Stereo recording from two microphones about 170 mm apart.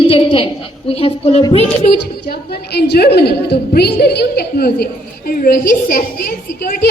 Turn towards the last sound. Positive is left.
turn(degrees=55)  # may be behind; listen again after turning